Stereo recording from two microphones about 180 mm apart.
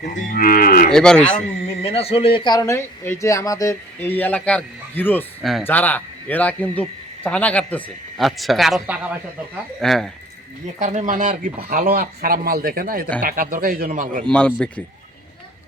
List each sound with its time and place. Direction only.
0.0 s moo: 45° left (ahead or behind)
0.9 s speech: 5° left (ahead or behind)
1.8 s speech: 35° left (ahead or behind); by 5.2 s 10° left (ahead or behind)
5.4 s speech: centre (ahead or behind)
10.8 s a man's voice: 45° right (ahead or behind)
14.3 s speech: 5° left (ahead or behind)